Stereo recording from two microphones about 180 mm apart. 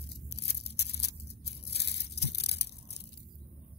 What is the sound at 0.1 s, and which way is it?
Tearing, 70° left (ahead or behind).